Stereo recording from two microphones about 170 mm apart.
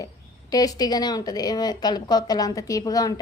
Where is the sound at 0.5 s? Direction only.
20° left (ahead or behind).